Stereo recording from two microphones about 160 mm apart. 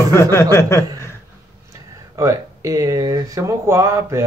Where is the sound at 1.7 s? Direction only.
20° right (ahead or behind).